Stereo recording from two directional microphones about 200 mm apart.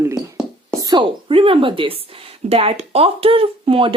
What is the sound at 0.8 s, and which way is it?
Speech, 25° right (ahead or behind).